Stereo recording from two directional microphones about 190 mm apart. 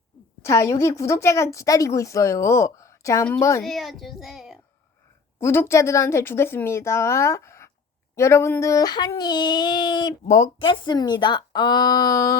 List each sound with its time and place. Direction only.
0.4 s a woman's voice: 15° left (ahead or behind)
3.6 s a child's voice: centre (ahead or behind)
5.4 s a woman's voice: 15° left (ahead or behind)